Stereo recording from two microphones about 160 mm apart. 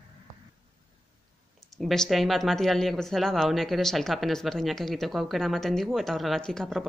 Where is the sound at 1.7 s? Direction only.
Centre (ahead or behind).